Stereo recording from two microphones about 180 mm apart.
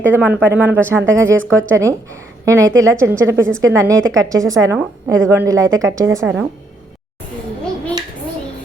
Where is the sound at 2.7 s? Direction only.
90° right.